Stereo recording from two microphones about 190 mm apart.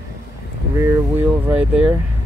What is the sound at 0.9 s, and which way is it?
Speech, 10° right (ahead or behind).